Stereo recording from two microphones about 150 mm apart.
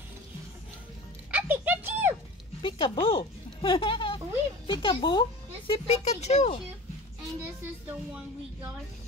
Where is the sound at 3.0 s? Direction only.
35° left (ahead or behind).